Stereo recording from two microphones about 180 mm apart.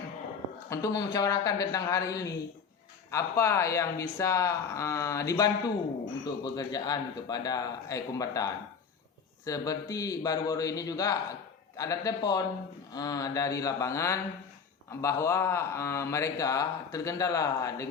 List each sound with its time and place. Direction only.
0.7 s a man's voice: 20° left (ahead or behind)